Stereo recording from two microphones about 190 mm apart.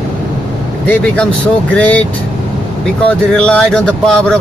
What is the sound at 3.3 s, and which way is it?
Speech, 5° left (ahead or behind).